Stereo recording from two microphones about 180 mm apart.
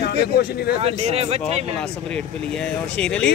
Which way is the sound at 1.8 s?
5° left (ahead or behind).